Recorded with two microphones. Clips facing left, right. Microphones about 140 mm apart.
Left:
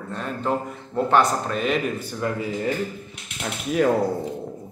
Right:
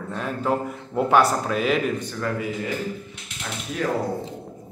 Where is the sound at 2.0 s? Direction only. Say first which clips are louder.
Left 1 dB; 15° left (ahead or behind).